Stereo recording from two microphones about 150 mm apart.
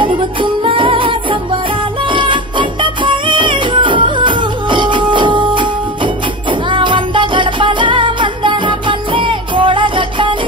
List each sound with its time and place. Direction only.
0.0 s music: 35° right (ahead or behind)
6.7 s music: 35° right (ahead or behind)